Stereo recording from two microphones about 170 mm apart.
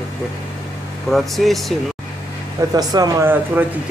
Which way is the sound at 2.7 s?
20° right (ahead or behind).